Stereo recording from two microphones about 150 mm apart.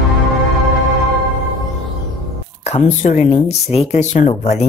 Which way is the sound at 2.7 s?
50° left (ahead or behind).